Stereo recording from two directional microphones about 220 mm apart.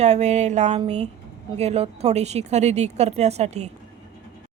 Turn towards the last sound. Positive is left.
turn(degrees=-30)  # may be behind; listen again after turning